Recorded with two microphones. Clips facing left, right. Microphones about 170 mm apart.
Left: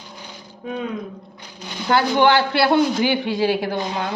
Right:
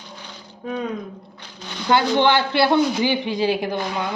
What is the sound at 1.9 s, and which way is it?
A woman's voice, 20° right (ahead or behind).